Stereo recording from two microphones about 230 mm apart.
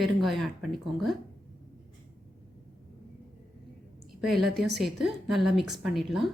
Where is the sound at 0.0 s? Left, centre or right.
Centre.